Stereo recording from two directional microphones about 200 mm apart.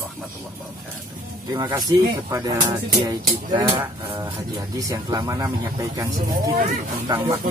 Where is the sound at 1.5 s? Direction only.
20° right (ahead or behind).